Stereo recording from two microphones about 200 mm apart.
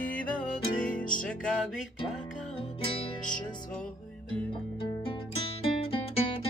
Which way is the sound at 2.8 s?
25° left (ahead or behind).